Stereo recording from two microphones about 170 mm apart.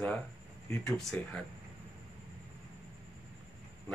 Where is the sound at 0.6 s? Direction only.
5° left (ahead or behind).